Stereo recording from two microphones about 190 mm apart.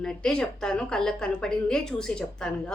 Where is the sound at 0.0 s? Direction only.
5° left (ahead or behind).